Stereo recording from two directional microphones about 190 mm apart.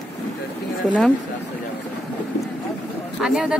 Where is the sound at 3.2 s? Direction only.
5° right (ahead or behind).